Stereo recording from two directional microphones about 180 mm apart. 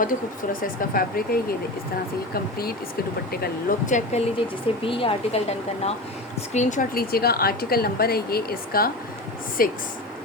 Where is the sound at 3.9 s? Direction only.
40° left (ahead or behind).